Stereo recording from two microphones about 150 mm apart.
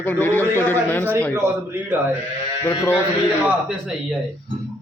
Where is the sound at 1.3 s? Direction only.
15° right (ahead or behind).